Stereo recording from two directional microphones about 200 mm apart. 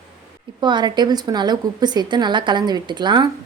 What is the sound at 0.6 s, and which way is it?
A woman's voice, 20° right (ahead or behind).